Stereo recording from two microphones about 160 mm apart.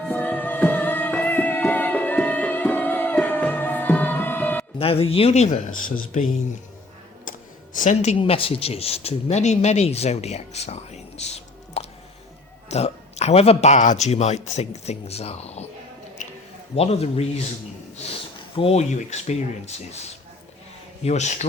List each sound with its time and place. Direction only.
0.0 s music: 10° left (ahead or behind)
4.8 s speech: 35° left (ahead or behind)
7.3 s music: 55° left (ahead or behind)
8.2 s speech: 35° left (ahead or behind)
16.2 s a sound: 50° left (ahead or behind)
16.7 s speech: 40° left (ahead or behind)
18.5 s speech: 40° left (ahead or behind)
21.0 s speech: 45° left (ahead or behind)